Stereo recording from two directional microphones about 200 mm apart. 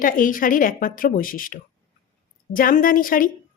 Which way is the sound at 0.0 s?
45° left (ahead or behind).